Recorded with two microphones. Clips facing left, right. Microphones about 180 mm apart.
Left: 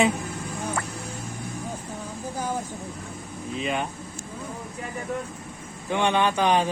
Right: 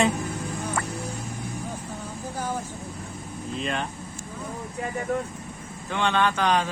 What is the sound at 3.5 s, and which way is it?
Speech, 5° left (ahead or behind).